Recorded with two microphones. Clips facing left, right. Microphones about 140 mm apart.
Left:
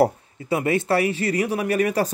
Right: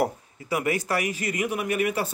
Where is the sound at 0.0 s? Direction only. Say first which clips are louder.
Left 7 dB; 25° left (ahead or behind).